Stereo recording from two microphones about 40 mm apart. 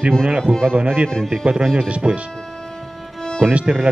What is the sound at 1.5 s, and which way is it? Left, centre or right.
Speech, centre.